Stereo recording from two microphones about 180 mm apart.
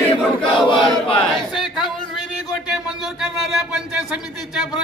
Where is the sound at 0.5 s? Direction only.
30° left (ahead or behind).